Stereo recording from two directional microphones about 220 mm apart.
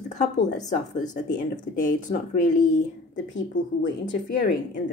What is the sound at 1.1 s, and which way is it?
A woman's voice, 35° left (ahead or behind).